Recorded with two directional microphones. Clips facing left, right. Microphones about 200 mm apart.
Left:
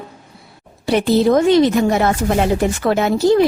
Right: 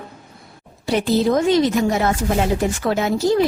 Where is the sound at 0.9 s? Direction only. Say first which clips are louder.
Left 4 dB; 65° left (ahead or behind).